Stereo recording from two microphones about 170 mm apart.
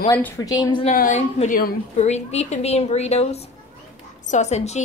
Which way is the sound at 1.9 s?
40° left (ahead or behind).